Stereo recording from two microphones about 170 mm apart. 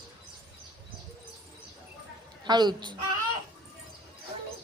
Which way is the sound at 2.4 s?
25° right (ahead or behind).